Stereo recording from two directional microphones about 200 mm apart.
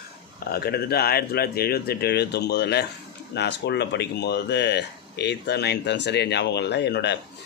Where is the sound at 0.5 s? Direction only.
50° left (ahead or behind).